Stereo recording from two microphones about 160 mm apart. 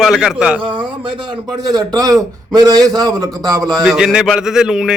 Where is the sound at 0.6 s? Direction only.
30° right (ahead or behind).